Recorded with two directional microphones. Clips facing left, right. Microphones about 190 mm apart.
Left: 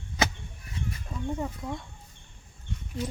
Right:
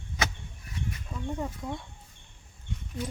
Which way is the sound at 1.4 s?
Centre (ahead or behind).